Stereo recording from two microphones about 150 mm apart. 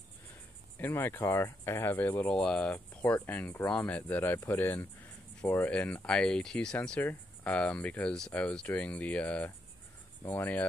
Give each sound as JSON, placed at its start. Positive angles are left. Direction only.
{"t": 0.7, "sound": "speech", "side_deg": 15}